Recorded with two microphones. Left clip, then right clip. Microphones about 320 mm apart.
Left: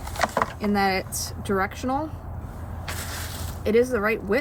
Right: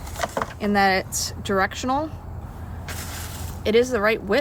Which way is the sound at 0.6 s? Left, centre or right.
Centre.